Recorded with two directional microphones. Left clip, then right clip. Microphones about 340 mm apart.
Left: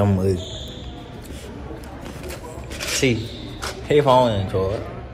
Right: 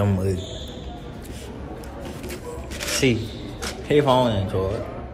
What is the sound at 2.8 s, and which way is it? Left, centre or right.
Zipper, centre.